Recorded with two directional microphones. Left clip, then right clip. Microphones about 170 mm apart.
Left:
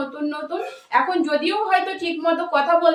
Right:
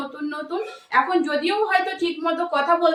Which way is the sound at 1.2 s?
20° right (ahead or behind).